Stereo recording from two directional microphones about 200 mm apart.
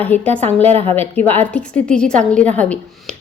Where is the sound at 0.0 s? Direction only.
10° left (ahead or behind).